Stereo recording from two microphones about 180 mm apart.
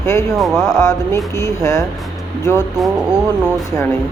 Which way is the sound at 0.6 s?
20° left (ahead or behind).